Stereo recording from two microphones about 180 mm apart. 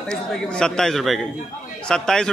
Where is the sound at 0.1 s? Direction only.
5° left (ahead or behind).